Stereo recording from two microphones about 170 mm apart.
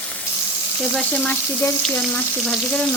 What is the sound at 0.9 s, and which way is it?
Frying, 5° left (ahead or behind).